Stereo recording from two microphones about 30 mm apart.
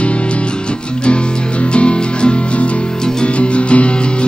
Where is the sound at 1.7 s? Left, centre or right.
Left.